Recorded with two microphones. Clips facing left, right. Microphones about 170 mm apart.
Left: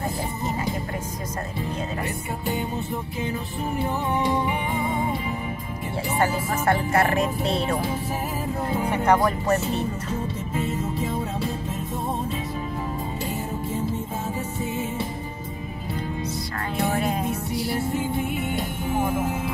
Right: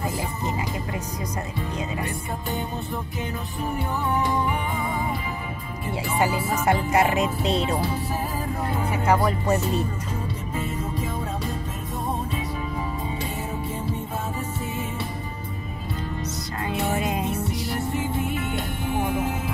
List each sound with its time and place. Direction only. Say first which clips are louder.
6.1 s speech: even; 15° right (ahead or behind)
8.9 s speech: left 1 dB; 5° right (ahead or behind)